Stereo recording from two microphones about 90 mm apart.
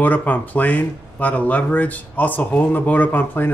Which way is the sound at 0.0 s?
20° left (ahead or behind).